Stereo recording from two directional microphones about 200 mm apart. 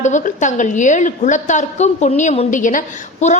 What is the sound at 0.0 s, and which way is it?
A woman's voice, 40° left (ahead or behind).